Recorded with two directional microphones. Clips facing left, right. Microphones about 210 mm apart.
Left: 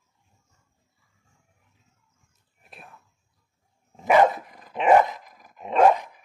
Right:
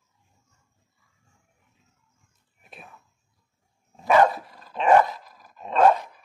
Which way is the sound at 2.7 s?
Centre (ahead or behind).